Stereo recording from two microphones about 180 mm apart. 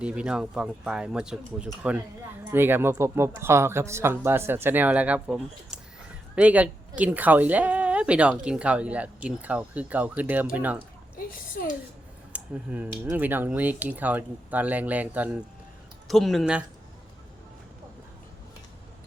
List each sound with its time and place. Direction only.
0.0 s a woman's voice: 5° right (ahead or behind)
11.3 s a woman's voice: 50° left (ahead or behind)
12.3 s a woman's voice: 10° right (ahead or behind)